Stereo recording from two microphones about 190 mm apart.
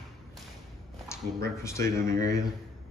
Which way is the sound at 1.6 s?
15° left (ahead or behind).